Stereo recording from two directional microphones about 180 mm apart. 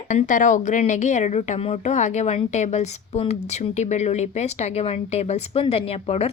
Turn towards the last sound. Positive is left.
turn(degrees=35)  # may be behind; listen again after turning